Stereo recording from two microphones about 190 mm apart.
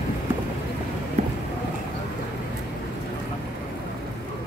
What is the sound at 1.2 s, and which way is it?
Run, 35° right (ahead or behind).